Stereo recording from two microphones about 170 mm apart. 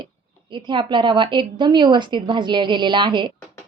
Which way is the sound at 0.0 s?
30° right (ahead or behind).